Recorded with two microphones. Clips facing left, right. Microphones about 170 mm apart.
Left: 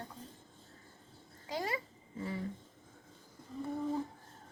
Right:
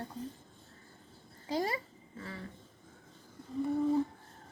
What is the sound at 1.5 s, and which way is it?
Speech, 35° right (ahead or behind).